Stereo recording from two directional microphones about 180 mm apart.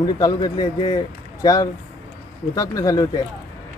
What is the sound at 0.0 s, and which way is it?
Speech, 20° left (ahead or behind).